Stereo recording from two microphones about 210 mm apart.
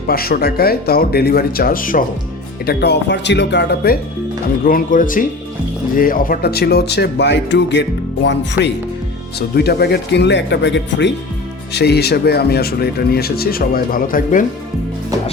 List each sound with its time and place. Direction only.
0.1 s speech: 45° left (ahead or behind)
2.6 s speech: 55° left (ahead or behind)
4.6 s speech: 40° left (ahead or behind)